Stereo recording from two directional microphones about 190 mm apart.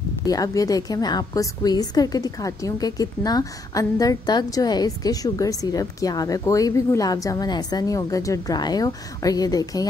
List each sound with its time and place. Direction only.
0.3 s a woman's voice: 20° left (ahead or behind)